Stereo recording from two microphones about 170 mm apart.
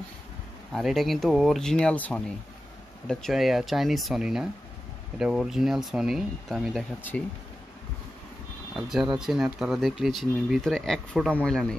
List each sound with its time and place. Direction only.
0.7 s speech: centre (ahead or behind)
7.0 s speech: 10° left (ahead or behind)
8.7 s speech: centre (ahead or behind)